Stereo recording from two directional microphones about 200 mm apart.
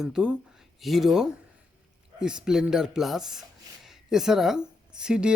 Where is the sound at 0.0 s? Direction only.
5° right (ahead or behind).